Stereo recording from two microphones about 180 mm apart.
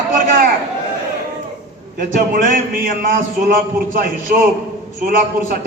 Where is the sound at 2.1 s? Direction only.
50° right (ahead or behind).